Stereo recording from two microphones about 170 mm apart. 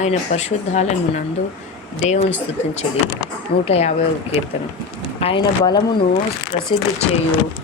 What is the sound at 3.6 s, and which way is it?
Speech, 35° left (ahead or behind).